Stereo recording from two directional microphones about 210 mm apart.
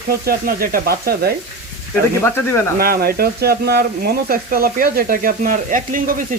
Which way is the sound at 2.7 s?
45° right (ahead or behind).